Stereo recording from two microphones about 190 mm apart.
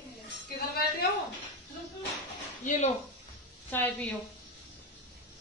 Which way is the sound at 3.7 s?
10° left (ahead or behind).